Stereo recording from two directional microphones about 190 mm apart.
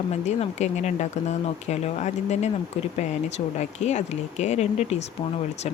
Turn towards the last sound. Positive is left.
turn(degrees=35)  # may be behind; listen again after turning